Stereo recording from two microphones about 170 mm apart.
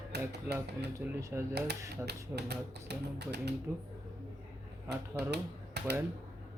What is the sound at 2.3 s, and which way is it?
Speech, 75° right (ahead or behind).